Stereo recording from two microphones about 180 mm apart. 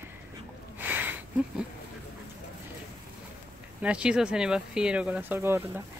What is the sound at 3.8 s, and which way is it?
Speech, 5° right (ahead or behind).